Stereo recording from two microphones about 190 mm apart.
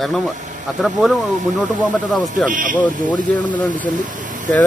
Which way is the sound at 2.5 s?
45° right (ahead or behind).